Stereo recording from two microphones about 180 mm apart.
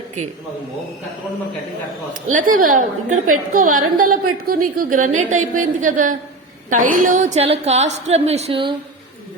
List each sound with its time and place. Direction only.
2.3 s a woman's voice: 50° right (ahead or behind); by 8.7 s 30° right (ahead or behind)